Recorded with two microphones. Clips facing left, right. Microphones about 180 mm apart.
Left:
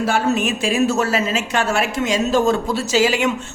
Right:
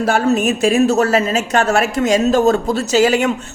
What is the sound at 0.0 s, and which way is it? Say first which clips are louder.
A woman's voice: right 4 dB; 45° right (ahead or behind).